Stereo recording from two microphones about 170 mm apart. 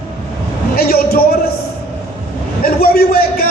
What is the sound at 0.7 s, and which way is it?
Speech, 65° left (ahead or behind).